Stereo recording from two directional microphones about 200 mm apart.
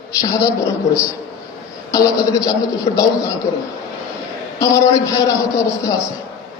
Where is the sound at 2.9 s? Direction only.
35° left (ahead or behind).